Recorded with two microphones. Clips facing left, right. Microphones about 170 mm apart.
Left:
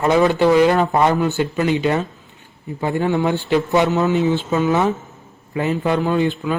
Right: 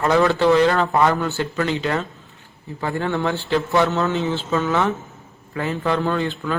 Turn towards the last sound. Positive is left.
turn(degrees=15)  # may be behind; listen again after turning